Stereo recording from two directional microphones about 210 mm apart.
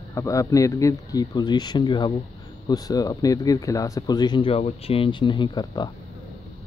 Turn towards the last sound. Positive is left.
turn(degrees=20)  # may be behind; listen again after turning